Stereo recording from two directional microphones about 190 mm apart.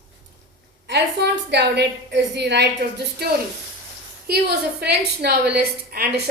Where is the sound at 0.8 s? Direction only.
65° right (ahead or behind).